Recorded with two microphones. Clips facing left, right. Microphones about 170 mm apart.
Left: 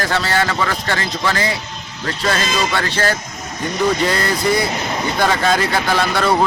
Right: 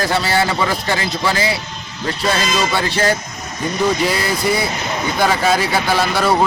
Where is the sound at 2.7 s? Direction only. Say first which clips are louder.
Right 2 dB; 15° right (ahead or behind).